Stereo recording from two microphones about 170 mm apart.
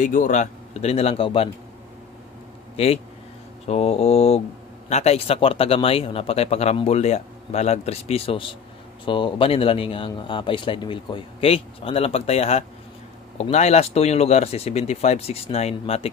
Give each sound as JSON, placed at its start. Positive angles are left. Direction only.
{"t": 0.0, "sound": "speech", "side_deg": 45}
{"t": 2.7, "sound": "a man's voice", "side_deg": 35}